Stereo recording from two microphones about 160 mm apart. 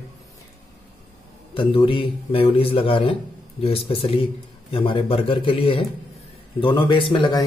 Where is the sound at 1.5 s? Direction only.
35° left (ahead or behind).